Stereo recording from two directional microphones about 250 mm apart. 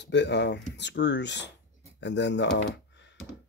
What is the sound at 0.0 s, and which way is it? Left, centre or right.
Speech, left.